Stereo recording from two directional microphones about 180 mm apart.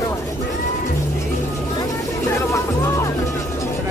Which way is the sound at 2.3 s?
15° left (ahead or behind).